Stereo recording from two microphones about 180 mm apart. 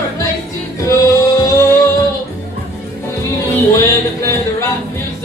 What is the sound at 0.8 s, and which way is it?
Music, 15° left (ahead or behind).